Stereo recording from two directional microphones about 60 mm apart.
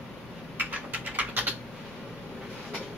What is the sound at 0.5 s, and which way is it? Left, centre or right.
Typing, right.